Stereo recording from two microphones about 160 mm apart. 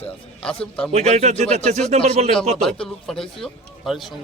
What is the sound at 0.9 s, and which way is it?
Speech, 45° right (ahead or behind).